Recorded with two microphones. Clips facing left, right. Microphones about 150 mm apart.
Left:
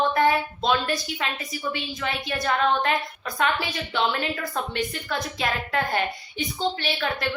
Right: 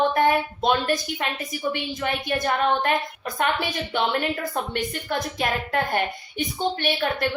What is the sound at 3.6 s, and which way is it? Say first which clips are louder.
A woman's voice: right 1 dB; 50° right (ahead or behind).